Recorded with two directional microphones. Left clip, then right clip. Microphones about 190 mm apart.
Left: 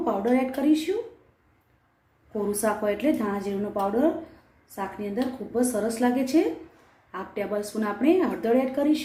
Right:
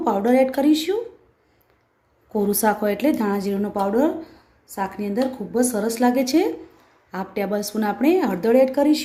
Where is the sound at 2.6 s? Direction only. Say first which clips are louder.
Right 4 dB; 60° right (ahead or behind).